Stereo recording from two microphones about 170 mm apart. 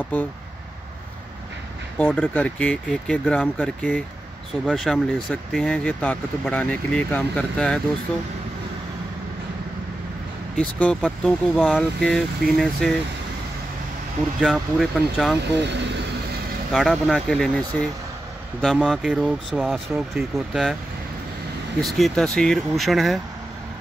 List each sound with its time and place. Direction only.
2.0 s speech: 10° left (ahead or behind)
10.5 s speech: 5° left (ahead or behind)
14.4 s speech: 5° right (ahead or behind)
16.7 s speech: centre (ahead or behind)
21.8 s speech: centre (ahead or behind)